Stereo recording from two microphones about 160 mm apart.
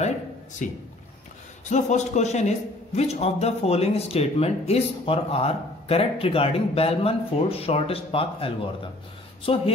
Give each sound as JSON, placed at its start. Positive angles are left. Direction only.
{"t": 0.6, "sound": "a man's voice", "side_deg": 50}